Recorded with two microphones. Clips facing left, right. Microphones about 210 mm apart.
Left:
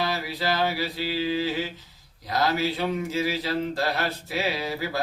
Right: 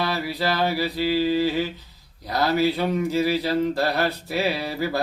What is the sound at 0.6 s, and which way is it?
Mantra, 40° right (ahead or behind).